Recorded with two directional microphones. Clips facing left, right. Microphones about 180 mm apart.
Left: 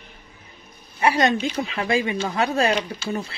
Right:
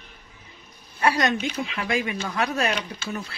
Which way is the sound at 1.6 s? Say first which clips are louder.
Left 4 dB; 35° left (ahead or behind).